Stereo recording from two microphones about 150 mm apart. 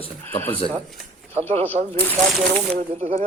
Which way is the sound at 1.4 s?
45° right (ahead or behind).